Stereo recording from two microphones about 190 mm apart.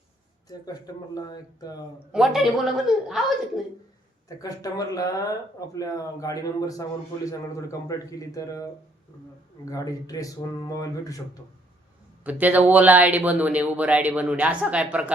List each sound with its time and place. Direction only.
0.4 s speech: 20° left (ahead or behind)
2.1 s a woman's voice: centre (ahead or behind)
4.4 s speech: 20° left (ahead or behind)
9.6 s speech: 20° left (ahead or behind)
12.2 s speech: 10° right (ahead or behind)